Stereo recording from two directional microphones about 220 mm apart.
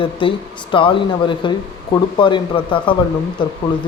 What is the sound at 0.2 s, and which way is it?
Speech, 25° left (ahead or behind).